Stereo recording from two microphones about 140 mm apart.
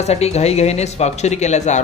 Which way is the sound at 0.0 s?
50° left (ahead or behind).